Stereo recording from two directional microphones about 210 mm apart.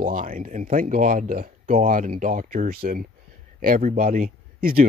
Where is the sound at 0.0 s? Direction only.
40° right (ahead or behind).